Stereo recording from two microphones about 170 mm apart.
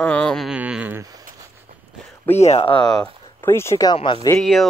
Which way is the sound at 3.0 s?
15° left (ahead or behind).